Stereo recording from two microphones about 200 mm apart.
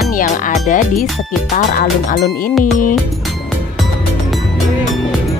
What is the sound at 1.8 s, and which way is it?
Speech, 45° left (ahead or behind).